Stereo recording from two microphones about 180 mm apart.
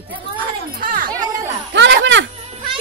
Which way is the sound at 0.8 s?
50° right (ahead or behind).